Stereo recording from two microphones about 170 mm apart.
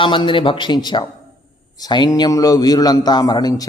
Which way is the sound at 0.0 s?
30° left (ahead or behind).